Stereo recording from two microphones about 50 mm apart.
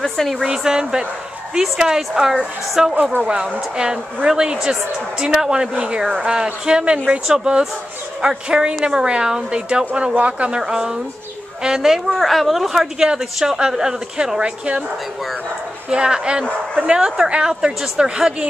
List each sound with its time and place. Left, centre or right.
0.0 s a woman's voice: centre
0.4 s a woman's voice: centre
10.5 s a woman's voice: centre
15.9 s a woman's voice: centre